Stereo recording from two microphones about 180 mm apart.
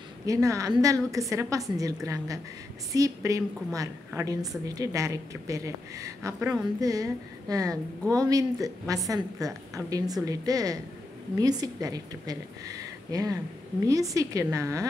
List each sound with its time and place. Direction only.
0.3 s a woman's voice: 15° right (ahead or behind)